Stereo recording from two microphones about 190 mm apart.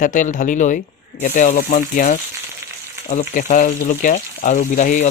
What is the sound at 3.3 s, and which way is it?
Speech, 45° left (ahead or behind).